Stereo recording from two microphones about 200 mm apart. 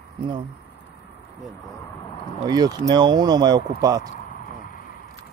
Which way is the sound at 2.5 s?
20° right (ahead or behind).